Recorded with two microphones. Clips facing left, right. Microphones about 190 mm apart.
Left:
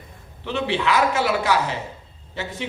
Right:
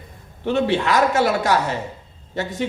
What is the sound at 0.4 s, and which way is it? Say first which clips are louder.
A man's voice: right 4 dB; 45° right (ahead or behind).